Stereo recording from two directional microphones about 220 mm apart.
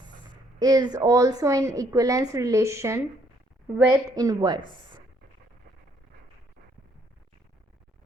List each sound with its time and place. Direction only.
0.6 s a woman's voice: 20° right (ahead or behind)